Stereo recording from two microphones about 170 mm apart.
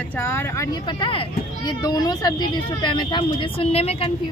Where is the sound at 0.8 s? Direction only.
30° left (ahead or behind).